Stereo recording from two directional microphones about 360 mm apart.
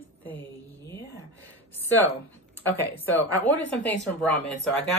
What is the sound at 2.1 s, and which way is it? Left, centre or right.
A woman's voice, centre.